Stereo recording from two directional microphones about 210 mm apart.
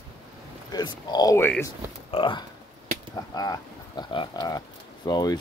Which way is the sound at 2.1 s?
25° left (ahead or behind).